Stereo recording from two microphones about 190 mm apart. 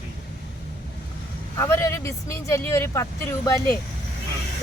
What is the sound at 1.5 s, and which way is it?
A man's voice, 15° left (ahead or behind).